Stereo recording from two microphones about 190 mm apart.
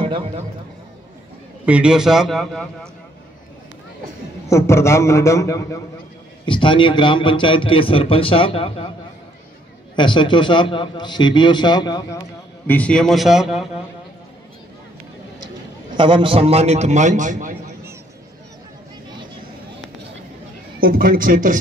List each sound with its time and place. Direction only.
1.7 s a man's voice: 5° right (ahead or behind)
4.5 s a man's voice: 15° left (ahead or behind); by 8.9 s 30° left (ahead or behind)
9.9 s a man's voice: 25° left (ahead or behind)
12.6 s a man's voice: 5° left (ahead or behind)
16.0 s a man's voice: 25° right (ahead or behind); by 17.6 s 40° right (ahead or behind)
20.8 s a man's voice: 50° right (ahead or behind)